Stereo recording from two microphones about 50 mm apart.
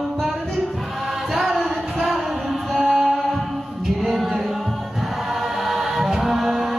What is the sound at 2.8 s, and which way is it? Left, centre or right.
Mantra, centre.